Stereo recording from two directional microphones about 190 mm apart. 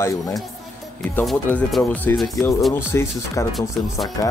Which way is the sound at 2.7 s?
15° left (ahead or behind).